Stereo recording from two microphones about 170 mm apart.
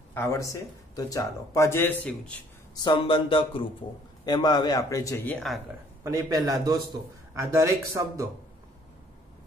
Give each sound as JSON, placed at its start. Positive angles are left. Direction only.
{"t": 0.1, "sound": "speech", "side_deg": 20}
{"t": 2.7, "sound": "a man's voice", "side_deg": 25}
{"t": 6.0, "sound": "a man's voice", "side_deg": -20}